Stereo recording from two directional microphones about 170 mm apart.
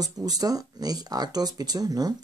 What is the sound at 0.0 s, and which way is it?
Speech, 20° right (ahead or behind).